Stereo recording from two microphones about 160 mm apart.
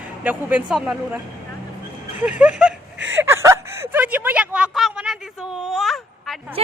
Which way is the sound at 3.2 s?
15° right (ahead or behind).